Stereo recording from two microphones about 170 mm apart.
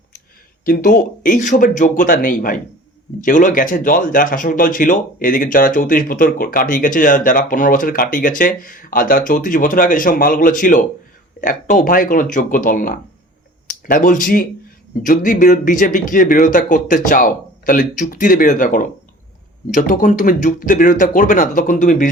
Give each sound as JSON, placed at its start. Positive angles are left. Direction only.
{"t": 0.6, "sound": "speech", "side_deg": 55}